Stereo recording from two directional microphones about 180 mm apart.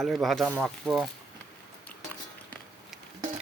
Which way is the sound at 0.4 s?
15° right (ahead or behind).